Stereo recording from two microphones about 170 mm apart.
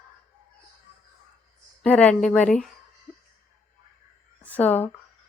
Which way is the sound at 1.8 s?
5° left (ahead or behind).